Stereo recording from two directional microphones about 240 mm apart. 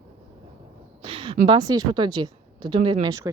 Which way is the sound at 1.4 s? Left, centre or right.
Centre.